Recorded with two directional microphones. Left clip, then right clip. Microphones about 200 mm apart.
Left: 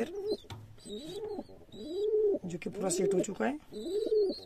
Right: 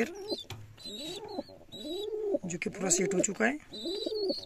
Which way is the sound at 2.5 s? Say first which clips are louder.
Right 2 dB; 10° right (ahead or behind).